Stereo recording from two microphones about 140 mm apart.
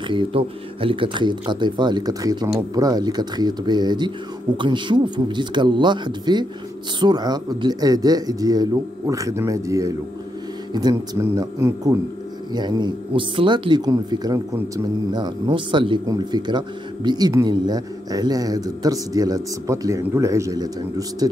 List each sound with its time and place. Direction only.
0.1 s speech: 40° right (ahead or behind)